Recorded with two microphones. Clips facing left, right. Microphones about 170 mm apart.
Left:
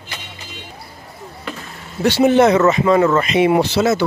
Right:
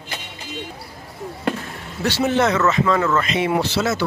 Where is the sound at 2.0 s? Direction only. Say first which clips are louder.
Left 7 dB; 15° left (ahead or behind).